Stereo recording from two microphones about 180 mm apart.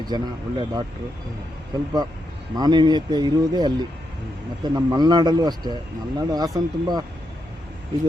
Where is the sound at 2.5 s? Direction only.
25° right (ahead or behind).